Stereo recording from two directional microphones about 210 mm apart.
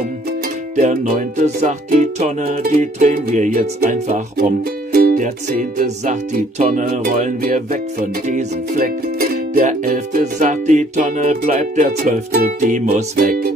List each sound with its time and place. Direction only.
0.7 s music: 40° right (ahead or behind)